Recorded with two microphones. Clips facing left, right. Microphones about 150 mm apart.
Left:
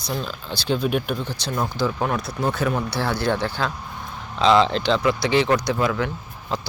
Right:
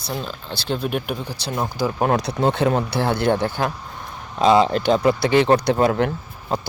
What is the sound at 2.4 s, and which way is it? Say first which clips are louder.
Speech: right 3 dB; 25° right (ahead or behind).